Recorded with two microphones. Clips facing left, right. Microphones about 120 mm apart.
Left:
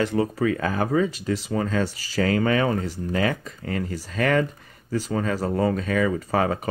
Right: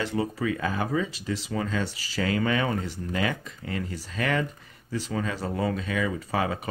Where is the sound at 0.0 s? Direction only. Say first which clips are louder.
Left 5 dB; 45° left (ahead or behind).